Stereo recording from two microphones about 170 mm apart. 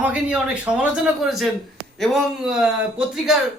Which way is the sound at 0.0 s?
5° right (ahead or behind).